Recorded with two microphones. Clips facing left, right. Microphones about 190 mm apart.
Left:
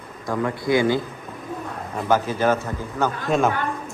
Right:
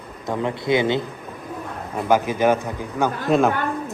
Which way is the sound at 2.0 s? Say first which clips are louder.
Right 2 dB; 15° right (ahead or behind).